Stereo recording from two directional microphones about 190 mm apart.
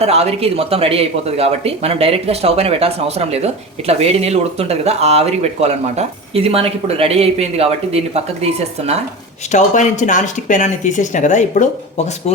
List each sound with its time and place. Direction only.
0.0 s speech: 35° right (ahead or behind)
9.5 s speech: 40° left (ahead or behind)